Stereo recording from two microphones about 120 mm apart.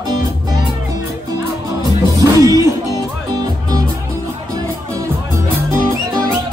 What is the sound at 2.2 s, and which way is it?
Music, 30° right (ahead or behind).